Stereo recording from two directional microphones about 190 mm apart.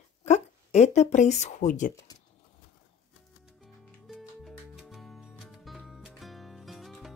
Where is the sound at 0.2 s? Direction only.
35° left (ahead or behind).